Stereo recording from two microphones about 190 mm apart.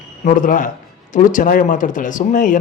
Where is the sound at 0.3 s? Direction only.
45° left (ahead or behind).